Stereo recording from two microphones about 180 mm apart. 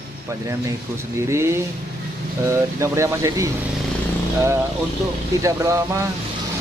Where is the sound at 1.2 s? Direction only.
15° right (ahead or behind).